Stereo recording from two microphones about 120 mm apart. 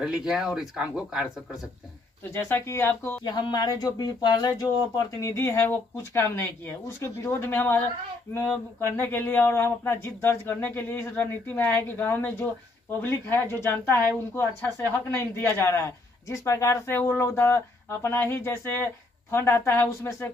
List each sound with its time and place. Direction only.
0.0 s speech: 5° right (ahead or behind)
2.3 s speech: 20° left (ahead or behind)
3.3 s speech: 35° left (ahead or behind)